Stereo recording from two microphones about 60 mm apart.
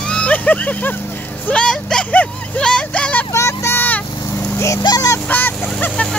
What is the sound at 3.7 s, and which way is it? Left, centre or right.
Vehicle, left.